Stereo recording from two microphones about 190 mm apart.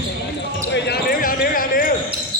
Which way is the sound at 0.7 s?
65° left (ahead or behind).